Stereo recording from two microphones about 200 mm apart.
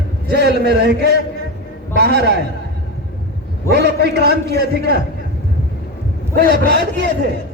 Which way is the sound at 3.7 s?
55° right (ahead or behind).